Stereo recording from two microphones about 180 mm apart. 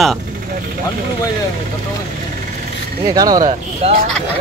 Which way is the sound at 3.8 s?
35° right (ahead or behind).